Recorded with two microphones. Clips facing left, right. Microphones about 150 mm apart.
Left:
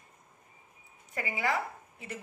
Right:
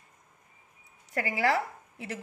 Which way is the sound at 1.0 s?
80° right.